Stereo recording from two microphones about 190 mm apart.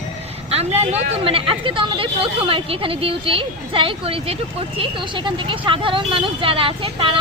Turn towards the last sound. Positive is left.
turn(degrees=-30)  # may be behind; listen again after turning